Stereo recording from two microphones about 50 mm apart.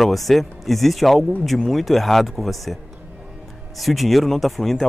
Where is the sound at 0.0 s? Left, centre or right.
Centre.